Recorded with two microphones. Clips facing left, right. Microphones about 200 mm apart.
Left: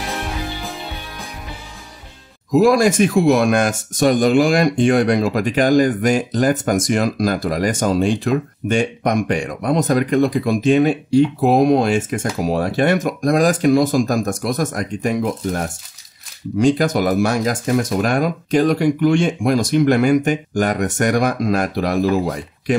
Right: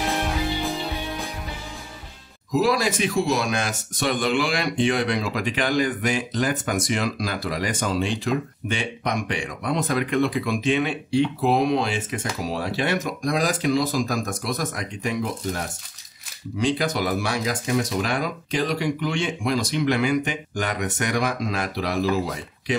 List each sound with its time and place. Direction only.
0.6 s music: centre (ahead or behind)
2.5 s speech: 50° left (ahead or behind)